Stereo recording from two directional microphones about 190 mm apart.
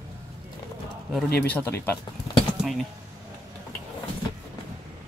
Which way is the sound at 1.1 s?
5° left (ahead or behind).